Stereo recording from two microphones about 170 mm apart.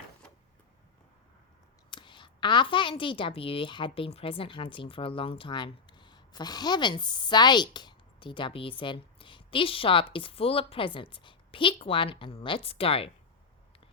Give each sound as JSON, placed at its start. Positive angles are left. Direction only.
{"t": 1.9, "sound": "a woman's voice", "side_deg": 25}